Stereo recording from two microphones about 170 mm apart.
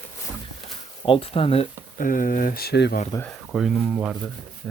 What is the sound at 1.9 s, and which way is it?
Speech, 55° left (ahead or behind).